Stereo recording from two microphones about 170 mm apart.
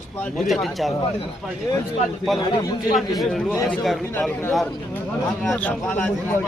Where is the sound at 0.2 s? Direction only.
Centre (ahead or behind).